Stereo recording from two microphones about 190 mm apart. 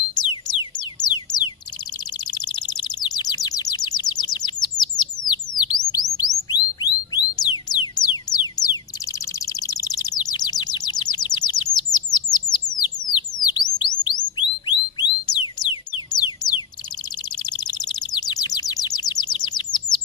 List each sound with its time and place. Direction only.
0.1 s music: 25° left (ahead or behind)
2.3 s bird: 20° left (ahead or behind)
6.1 s music: 20° left (ahead or behind)
13.1 s bird: 20° left (ahead or behind)
14.7 s a sound: 20° left (ahead or behind)
15.4 s music: 25° left (ahead or behind)
17.5 s bird: 20° left (ahead or behind)